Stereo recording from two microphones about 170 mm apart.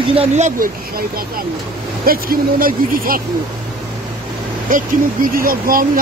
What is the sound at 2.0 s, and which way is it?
Speech, 60° right (ahead or behind).